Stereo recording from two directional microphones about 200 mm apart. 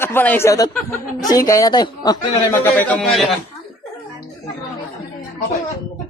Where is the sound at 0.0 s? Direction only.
10° left (ahead or behind).